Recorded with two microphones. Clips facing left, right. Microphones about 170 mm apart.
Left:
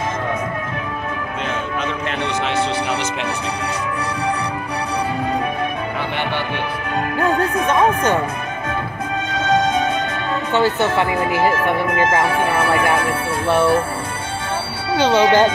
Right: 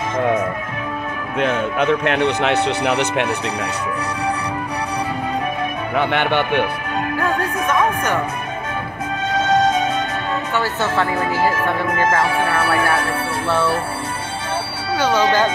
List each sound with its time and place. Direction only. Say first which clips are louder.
1.4 s speech: right 7 dB; 60° right (ahead or behind)
5.9 s speech: right 10 dB; 65° right (ahead or behind)
7.2 s speech: left 5 dB; 20° left (ahead or behind)
10.5 s speech: left 5 dB; 20° left (ahead or behind)
15.0 s speech: left 3 dB; 20° left (ahead or behind)